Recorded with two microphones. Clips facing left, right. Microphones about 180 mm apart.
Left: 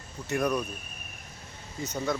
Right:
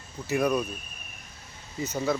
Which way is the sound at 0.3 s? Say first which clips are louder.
Right 3 dB; 5° right (ahead or behind).